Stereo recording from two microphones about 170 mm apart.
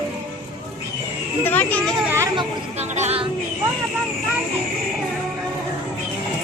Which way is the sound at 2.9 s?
35° right (ahead or behind).